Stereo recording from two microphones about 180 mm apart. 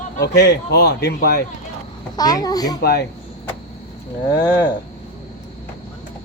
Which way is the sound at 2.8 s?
60° left (ahead or behind).